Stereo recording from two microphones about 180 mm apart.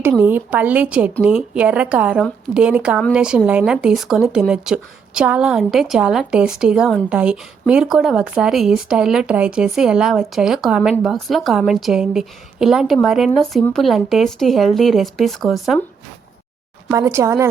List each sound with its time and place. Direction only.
0.2 s speech: 10° right (ahead or behind)
16.9 s speech: 15° right (ahead or behind)